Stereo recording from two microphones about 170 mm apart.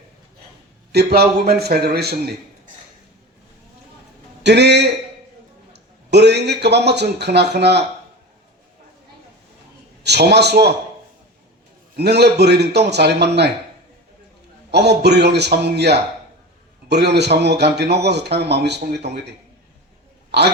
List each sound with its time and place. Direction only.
0.9 s a man's voice: 70° right (ahead or behind)
4.4 s a man's voice: 90° right
10.0 s a man's voice: 75° right (ahead or behind)
11.9 s a man's voice: 75° right (ahead or behind)
14.7 s a man's voice: 80° right
20.3 s a man's voice: 80° right